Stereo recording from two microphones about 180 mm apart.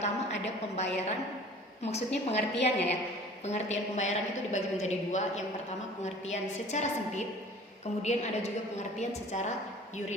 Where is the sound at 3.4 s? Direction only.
40° left (ahead or behind).